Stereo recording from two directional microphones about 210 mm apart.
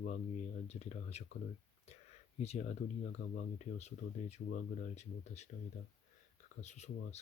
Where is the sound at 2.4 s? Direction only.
30° left (ahead or behind).